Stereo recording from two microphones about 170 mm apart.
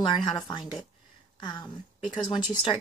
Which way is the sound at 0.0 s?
25° left (ahead or behind).